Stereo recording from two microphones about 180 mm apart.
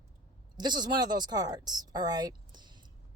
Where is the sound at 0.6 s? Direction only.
25° right (ahead or behind).